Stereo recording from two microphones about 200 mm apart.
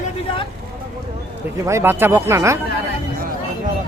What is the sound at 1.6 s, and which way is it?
Speech, 15° right (ahead or behind).